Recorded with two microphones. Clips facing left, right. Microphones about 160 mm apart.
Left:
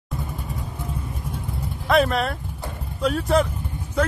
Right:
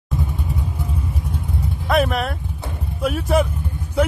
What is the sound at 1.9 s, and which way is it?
Vehicle, centre (ahead or behind).